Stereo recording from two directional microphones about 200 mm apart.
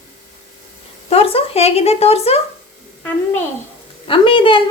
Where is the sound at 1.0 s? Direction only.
30° left (ahead or behind).